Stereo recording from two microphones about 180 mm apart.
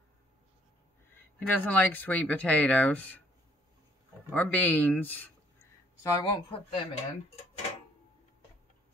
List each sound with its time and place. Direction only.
1.1 s speech: 10° left (ahead or behind)
4.3 s speech: 10° left (ahead or behind)
6.0 s speech: 25° left (ahead or behind)